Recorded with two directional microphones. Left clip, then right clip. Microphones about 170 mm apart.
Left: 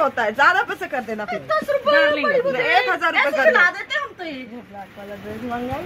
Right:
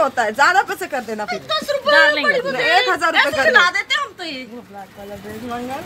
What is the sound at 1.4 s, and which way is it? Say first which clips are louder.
Speech: left 2 dB; 40° left (ahead or behind).